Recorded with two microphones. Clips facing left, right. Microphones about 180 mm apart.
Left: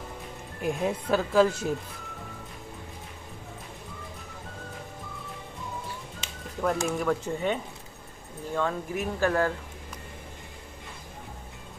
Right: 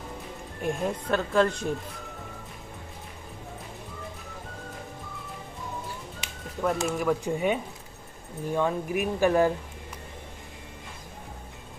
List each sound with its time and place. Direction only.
0.6 s speech: 5° left (ahead or behind)
6.6 s speech: centre (ahead or behind)